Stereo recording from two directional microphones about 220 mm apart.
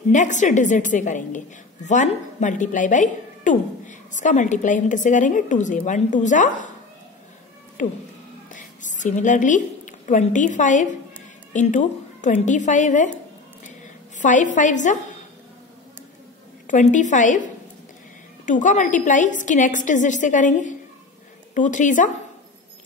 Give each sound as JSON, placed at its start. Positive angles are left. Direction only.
{"t": 0.1, "sound": "speech", "side_deg": 35}
{"t": 8.5, "sound": "a woman's voice", "side_deg": 35}
{"t": 14.2, "sound": "speech", "side_deg": 35}
{"t": 16.6, "sound": "speech", "side_deg": 35}
{"t": 18.4, "sound": "speech", "side_deg": 35}